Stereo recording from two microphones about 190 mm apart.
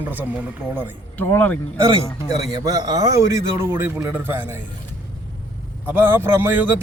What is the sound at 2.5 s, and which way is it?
A man's voice, 20° right (ahead or behind).